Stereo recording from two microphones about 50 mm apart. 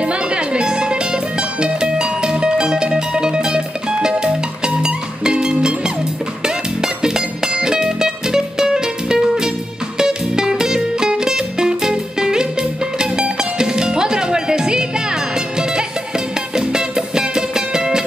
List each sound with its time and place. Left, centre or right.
0.0 s music: right